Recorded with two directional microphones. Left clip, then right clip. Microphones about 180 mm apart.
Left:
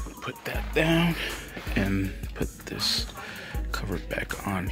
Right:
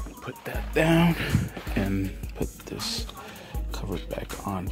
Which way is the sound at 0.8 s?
30° right (ahead or behind).